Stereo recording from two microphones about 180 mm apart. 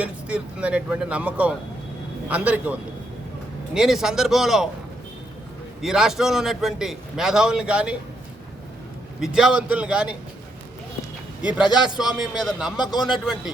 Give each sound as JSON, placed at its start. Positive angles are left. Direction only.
{"t": 0.0, "sound": "speech", "side_deg": -5}
{"t": 3.8, "sound": "a man's voice", "side_deg": 0}
{"t": 5.8, "sound": "a man's voice", "side_deg": 0}
{"t": 9.2, "sound": "a man's voice", "side_deg": -5}
{"t": 11.4, "sound": "a man's voice", "side_deg": -5}